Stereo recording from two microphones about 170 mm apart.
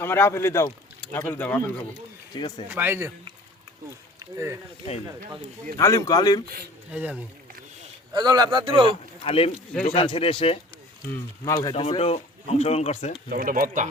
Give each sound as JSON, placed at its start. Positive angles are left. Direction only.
{"t": 0.0, "sound": "speech", "side_deg": 15}
{"t": 2.3, "sound": "a man's voice", "side_deg": 25}
{"t": 2.6, "sound": "a man's voice", "side_deg": -10}
{"t": 5.7, "sound": "a man's voice", "side_deg": 20}
{"t": 6.9, "sound": "a man's voice", "side_deg": -10}
{"t": 8.1, "sound": "speech", "side_deg": -25}
{"t": 9.2, "sound": "speech", "side_deg": 35}
{"t": 11.7, "sound": "speech", "side_deg": 35}
{"t": 13.3, "sound": "speech", "side_deg": -55}